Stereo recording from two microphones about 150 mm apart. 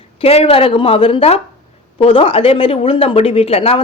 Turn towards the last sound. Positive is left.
turn(degrees=40)  # may be behind; listen again after turning